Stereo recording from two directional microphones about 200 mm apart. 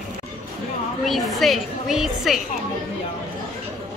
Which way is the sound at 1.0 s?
Centre (ahead or behind).